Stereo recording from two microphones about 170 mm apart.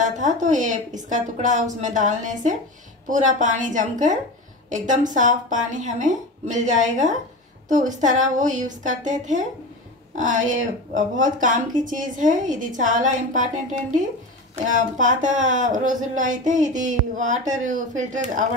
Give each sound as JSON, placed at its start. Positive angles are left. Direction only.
{"t": 0.0, "sound": "a woman's voice", "side_deg": -45}